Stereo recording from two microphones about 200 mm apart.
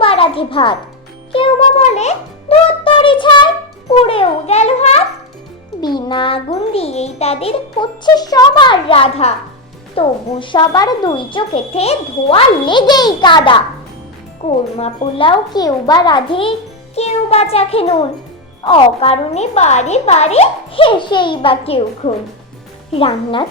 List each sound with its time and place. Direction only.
0.0 s music: 25° left (ahead or behind)
5.8 s speech: 20° left (ahead or behind)